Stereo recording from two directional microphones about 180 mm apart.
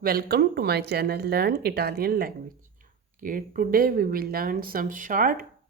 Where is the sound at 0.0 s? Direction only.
60° right (ahead or behind).